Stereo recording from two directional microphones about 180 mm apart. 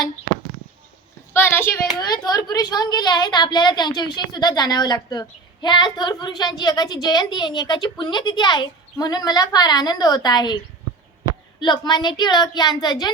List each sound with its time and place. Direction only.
1.3 s a sound: 15° left (ahead or behind)
2.0 s a woman's voice: 20° left (ahead or behind)
11.6 s a woman's voice: 25° left (ahead or behind)